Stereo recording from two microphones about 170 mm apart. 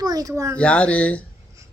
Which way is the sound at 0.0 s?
20° right (ahead or behind).